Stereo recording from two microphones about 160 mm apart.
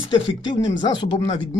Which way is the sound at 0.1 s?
30° left (ahead or behind).